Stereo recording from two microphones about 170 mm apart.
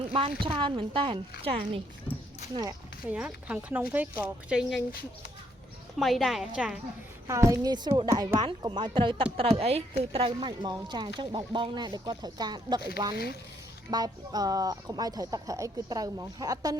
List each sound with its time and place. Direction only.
0.1 s speech: 30° right (ahead or behind)
3.1 s speech: 5° right (ahead or behind)
6.0 s a woman's voice: centre (ahead or behind)
7.3 s a woman's voice: 20° right (ahead or behind)
13.9 s a woman's voice: 20° right (ahead or behind)